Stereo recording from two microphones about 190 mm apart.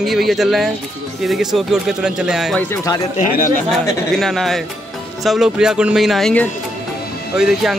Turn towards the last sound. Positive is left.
turn(degrees=-5)  # may be behind; listen again after turning